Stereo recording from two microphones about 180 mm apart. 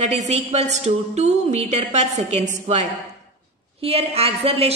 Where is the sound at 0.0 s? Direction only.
40° right (ahead or behind).